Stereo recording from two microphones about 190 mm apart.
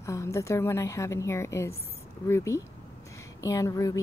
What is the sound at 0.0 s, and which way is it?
A woman's voice, 15° left (ahead or behind).